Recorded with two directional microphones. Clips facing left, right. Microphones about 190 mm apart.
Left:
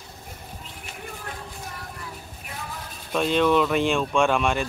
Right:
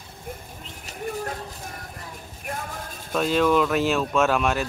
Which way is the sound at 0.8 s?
45° right (ahead or behind).